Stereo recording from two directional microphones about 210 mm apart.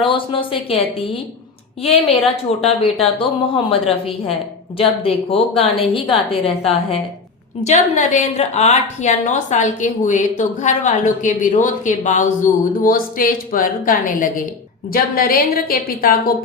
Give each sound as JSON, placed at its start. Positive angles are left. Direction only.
{"t": 0.0, "sound": "a woman's voice", "side_deg": 25}